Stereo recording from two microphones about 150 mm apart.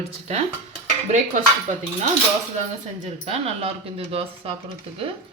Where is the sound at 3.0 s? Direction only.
45° right (ahead or behind).